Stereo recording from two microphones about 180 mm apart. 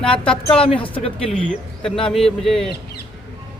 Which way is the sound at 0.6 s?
30° left (ahead or behind).